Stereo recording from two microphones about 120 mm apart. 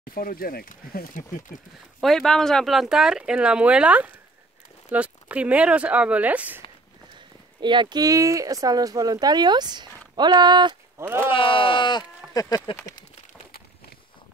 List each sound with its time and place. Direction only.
1.1 s speech: 90° left
2.0 s speech: 5° left (ahead or behind); by 6.6 s 15° right (ahead or behind)
7.6 s speech: 40° right (ahead or behind)
11.2 s speech: 45° left (ahead or behind)
12.4 s speech: 30° left (ahead or behind)